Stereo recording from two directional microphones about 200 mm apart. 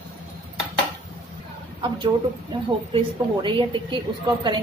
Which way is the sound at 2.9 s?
25° right (ahead or behind).